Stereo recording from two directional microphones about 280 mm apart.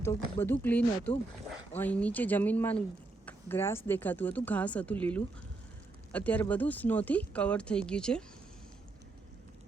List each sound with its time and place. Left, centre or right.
0.0 s speech: centre